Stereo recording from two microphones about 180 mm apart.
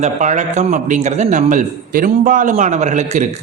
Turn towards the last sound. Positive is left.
turn(degrees=-40)  # may be behind; listen again after turning